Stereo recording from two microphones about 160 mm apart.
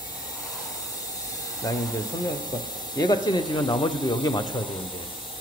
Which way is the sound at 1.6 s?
20° left (ahead or behind).